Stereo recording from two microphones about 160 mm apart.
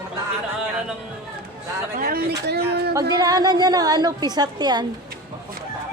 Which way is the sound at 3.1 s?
25° right (ahead or behind).